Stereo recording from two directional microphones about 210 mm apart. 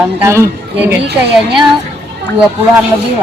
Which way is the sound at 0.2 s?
15° right (ahead or behind).